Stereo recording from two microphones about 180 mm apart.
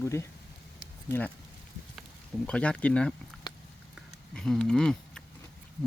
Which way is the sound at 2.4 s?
5° left (ahead or behind).